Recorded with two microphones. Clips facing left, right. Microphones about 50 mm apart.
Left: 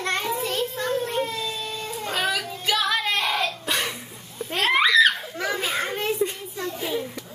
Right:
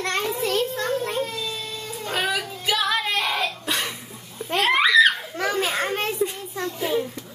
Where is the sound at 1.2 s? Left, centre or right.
Left.